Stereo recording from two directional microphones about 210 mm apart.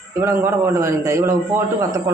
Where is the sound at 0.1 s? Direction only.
10° right (ahead or behind).